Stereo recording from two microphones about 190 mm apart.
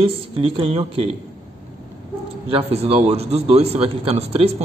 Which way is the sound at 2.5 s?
30° right (ahead or behind).